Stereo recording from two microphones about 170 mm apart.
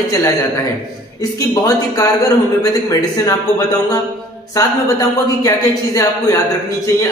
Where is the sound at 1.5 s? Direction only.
20° left (ahead or behind).